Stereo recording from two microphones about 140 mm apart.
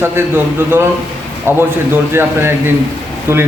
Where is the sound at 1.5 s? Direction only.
15° right (ahead or behind).